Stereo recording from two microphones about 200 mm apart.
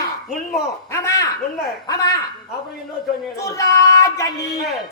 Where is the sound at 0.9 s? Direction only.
15° left (ahead or behind).